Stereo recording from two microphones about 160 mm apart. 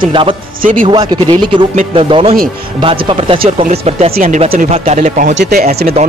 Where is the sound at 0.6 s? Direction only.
55° right (ahead or behind).